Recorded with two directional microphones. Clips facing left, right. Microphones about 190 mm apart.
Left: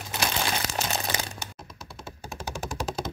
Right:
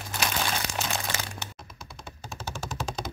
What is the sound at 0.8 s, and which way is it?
Crumpling, 40° left (ahead or behind).